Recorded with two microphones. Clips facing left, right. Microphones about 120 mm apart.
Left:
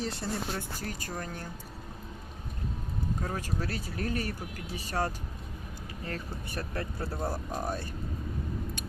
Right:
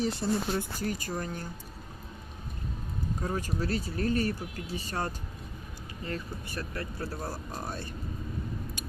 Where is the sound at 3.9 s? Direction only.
5° left (ahead or behind).